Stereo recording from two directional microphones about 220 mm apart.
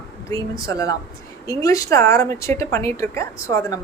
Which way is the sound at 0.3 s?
15° left (ahead or behind).